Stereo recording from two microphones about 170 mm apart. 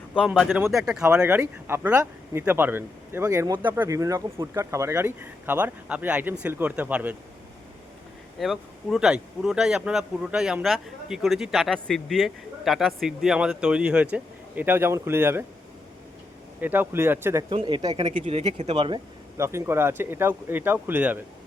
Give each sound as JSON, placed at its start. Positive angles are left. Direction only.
{"t": 0.1, "sound": "speech", "side_deg": -5}
{"t": 8.4, "sound": "speech", "side_deg": 0}
{"t": 16.6, "sound": "speech", "side_deg": -10}
{"t": 17.5, "sound": "speech", "side_deg": -30}
{"t": 18.2, "sound": "speech", "side_deg": -35}
{"t": 19.4, "sound": "speech", "side_deg": -15}